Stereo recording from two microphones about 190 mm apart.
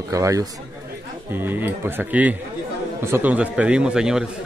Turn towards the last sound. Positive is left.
turn(degrees=-5)  # may be behind; listen again after turning